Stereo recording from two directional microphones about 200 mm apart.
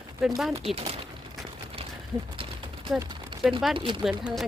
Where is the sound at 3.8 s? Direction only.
25° right (ahead or behind).